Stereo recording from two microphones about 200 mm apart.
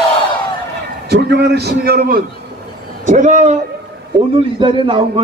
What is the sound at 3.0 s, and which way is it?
Speech, 35° right (ahead or behind).